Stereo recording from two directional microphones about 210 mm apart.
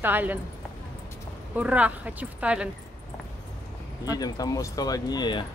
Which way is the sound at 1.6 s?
5° right (ahead or behind).